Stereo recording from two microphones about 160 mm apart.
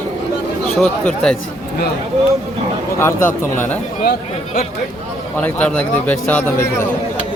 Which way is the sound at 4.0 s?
75° left (ahead or behind).